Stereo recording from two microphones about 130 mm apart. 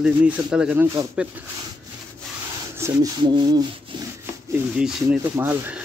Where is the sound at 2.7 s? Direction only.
20° right (ahead or behind).